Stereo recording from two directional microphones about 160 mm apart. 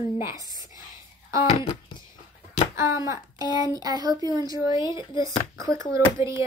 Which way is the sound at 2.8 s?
20° right (ahead or behind).